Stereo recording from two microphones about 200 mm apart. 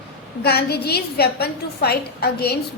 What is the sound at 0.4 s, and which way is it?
A woman's voice, 50° left (ahead or behind).